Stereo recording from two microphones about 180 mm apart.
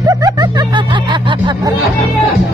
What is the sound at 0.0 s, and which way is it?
Music, 20° right (ahead or behind).